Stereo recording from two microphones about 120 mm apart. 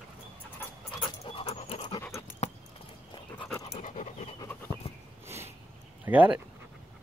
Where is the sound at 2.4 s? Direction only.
65° left (ahead or behind).